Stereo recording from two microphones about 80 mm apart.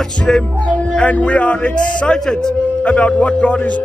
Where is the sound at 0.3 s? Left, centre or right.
Centre.